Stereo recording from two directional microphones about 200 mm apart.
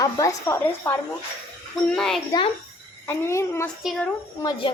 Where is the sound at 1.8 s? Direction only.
5° left (ahead or behind).